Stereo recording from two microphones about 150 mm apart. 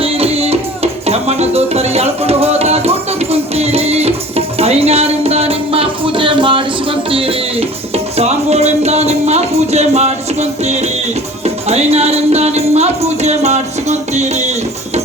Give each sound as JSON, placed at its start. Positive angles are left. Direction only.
{"t": 0.0, "sound": "music", "side_deg": -40}